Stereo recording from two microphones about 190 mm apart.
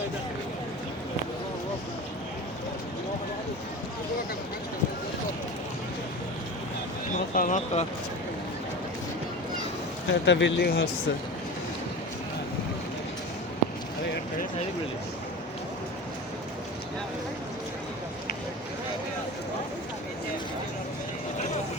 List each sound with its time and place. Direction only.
7.1 s speech: 40° left (ahead or behind)
10.1 s speech: 70° left (ahead or behind)